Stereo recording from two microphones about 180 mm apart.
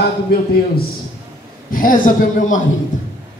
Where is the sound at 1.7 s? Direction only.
50° left (ahead or behind).